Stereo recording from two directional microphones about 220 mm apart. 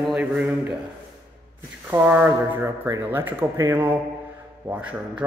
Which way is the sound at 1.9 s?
10° right (ahead or behind).